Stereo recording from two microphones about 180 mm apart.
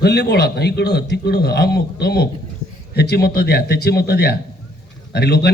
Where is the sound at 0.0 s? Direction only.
65° left (ahead or behind).